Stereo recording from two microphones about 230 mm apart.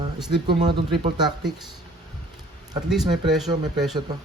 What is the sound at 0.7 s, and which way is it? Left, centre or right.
Speech, right.